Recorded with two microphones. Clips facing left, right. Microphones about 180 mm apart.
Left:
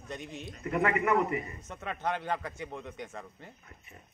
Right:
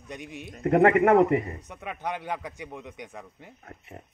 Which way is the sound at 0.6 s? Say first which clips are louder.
Right 9 dB; 60° right (ahead or behind).